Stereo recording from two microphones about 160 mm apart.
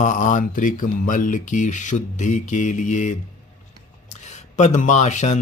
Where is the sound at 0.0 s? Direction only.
50° left (ahead or behind).